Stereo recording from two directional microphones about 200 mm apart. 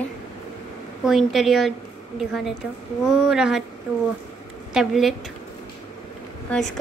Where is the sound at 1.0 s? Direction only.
Centre (ahead or behind).